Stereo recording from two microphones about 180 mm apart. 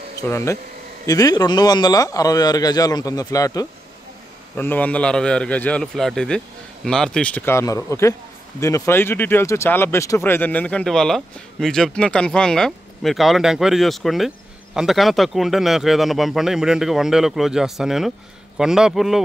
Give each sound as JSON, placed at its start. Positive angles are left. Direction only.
{"t": 1.0, "sound": "speech", "side_deg": 20}
{"t": 4.6, "sound": "a man's voice", "side_deg": 10}